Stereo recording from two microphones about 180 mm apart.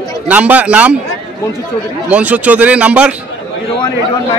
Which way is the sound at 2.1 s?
10° right (ahead or behind).